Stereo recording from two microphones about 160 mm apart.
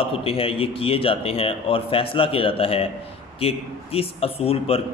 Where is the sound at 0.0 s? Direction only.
35° left (ahead or behind).